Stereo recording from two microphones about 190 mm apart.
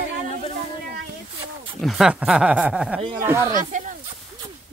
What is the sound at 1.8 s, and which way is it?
Speech, centre (ahead or behind).